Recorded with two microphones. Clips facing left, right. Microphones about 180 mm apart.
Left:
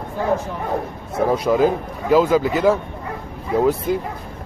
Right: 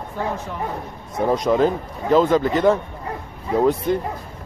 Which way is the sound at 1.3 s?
5° left (ahead or behind).